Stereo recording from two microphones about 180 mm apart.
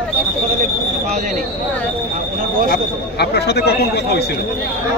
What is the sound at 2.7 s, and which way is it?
Speech, 65° left (ahead or behind).